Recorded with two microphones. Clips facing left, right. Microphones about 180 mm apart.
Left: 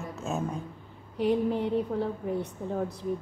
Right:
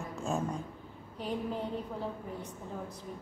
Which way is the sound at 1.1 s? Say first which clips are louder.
Left 10 dB; 70° left (ahead or behind).